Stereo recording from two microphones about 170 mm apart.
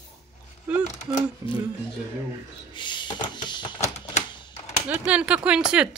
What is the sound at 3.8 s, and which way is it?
Typewriter, 40° left (ahead or behind).